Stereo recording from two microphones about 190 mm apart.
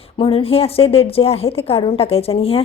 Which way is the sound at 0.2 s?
30° left (ahead or behind).